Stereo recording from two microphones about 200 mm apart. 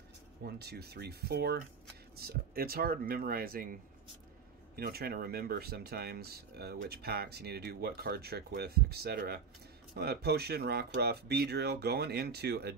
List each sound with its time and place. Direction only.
0.4 s speech: 55° right (ahead or behind)